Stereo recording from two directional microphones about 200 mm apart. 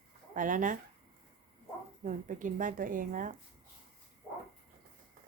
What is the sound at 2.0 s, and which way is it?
A woman's voice, 40° right (ahead or behind).